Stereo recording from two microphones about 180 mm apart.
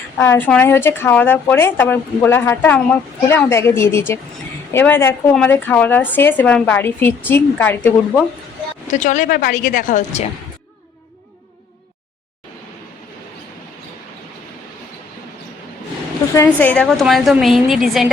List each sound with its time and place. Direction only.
0.2 s speech: 10° left (ahead or behind)
8.9 s a woman's voice: 45° left (ahead or behind)
16.3 s a woman's voice: 10° left (ahead or behind)